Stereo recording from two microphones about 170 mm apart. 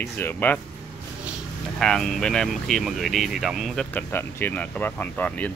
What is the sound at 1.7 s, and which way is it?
Speech, centre (ahead or behind).